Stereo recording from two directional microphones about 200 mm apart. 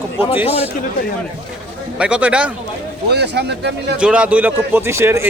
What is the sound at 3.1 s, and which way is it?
Speech, 55° right (ahead or behind).